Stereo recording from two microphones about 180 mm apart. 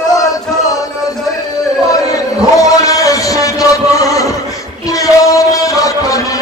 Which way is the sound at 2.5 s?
20° left (ahead or behind).